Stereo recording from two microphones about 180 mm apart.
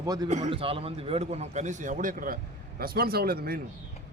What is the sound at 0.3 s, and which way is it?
A man's voice, 40° right (ahead or behind).